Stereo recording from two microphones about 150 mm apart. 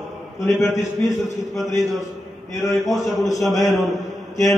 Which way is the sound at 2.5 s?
15° left (ahead or behind).